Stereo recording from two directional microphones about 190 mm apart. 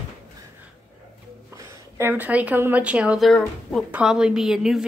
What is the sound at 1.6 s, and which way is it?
A woman's voice, 10° right (ahead or behind).